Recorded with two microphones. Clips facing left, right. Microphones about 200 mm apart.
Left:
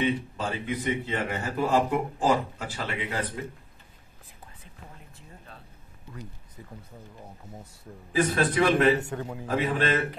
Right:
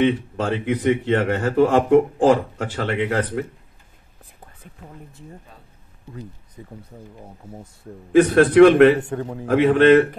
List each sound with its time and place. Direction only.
0.0 s speech: 80° right
7.4 s speech: 10° right (ahead or behind)
8.1 s a man's voice: 75° right (ahead or behind)
9.1 s a man's voice: 40° right (ahead or behind)
9.8 s a man's voice: 70° right (ahead or behind)